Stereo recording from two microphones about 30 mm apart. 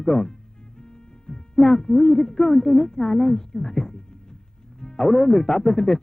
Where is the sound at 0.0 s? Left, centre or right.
Left.